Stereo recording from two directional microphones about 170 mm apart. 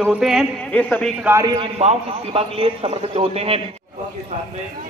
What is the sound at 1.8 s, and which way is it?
A man's voice, 35° right (ahead or behind).